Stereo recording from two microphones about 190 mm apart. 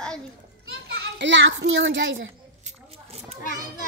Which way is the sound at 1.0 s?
70° right (ahead or behind).